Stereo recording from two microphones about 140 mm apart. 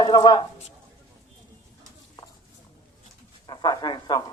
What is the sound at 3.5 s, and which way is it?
Speech, 35° left (ahead or behind).